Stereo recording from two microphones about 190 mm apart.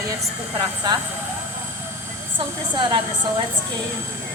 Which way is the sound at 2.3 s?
25° right (ahead or behind).